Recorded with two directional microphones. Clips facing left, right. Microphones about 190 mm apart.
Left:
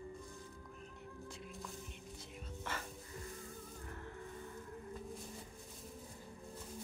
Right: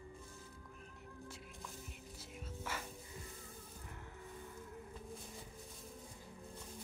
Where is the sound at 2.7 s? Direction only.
10° right (ahead or behind).